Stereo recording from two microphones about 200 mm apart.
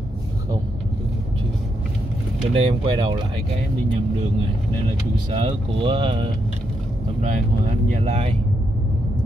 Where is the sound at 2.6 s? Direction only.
25° right (ahead or behind).